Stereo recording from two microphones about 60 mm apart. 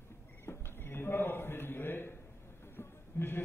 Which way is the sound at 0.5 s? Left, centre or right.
Left.